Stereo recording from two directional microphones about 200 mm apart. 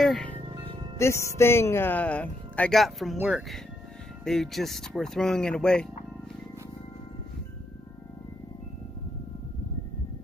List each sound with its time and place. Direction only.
0.0 s speech: centre (ahead or behind)
0.5 s music: 25° right (ahead or behind)
0.9 s speech: 15° left (ahead or behind)